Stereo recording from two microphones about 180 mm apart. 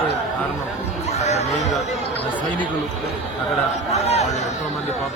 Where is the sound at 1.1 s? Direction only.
35° left (ahead or behind).